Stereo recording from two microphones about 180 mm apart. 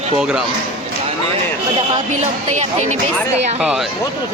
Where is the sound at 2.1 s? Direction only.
40° right (ahead or behind).